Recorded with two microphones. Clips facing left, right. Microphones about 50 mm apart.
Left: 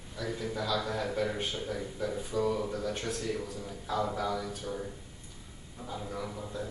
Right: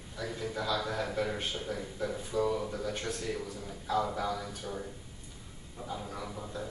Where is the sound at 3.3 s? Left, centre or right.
Centre.